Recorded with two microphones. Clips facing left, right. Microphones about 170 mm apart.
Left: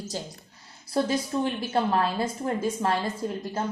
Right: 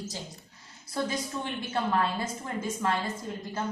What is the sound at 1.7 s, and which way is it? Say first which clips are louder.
Speech: left 2 dB; 35° left (ahead or behind).